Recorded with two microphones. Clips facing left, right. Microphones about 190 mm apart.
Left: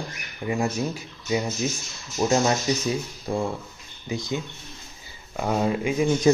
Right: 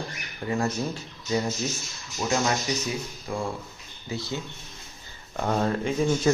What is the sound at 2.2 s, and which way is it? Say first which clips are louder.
Speech: left 4 dB; 30° left (ahead or behind).